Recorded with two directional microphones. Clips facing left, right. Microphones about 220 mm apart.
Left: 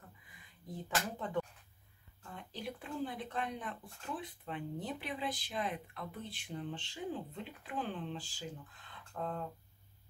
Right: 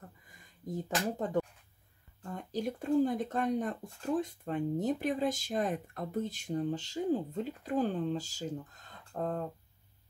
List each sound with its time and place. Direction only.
0.3 s speech: 45° right (ahead or behind)